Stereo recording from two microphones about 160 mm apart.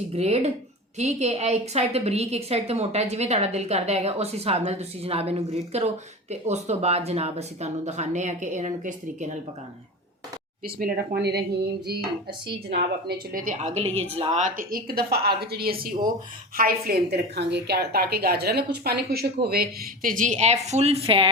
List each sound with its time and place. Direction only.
0.1 s a woman's voice: 40° right (ahead or behind)
10.8 s speech: 65° right (ahead or behind); by 11.9 s 90° right
13.1 s a woman's voice: 60° right (ahead or behind); by 19.3 s 80° right
19.5 s speech: 65° right (ahead or behind); by 21.2 s 35° right (ahead or behind)